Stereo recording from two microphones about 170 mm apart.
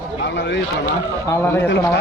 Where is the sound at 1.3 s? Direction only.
15° left (ahead or behind).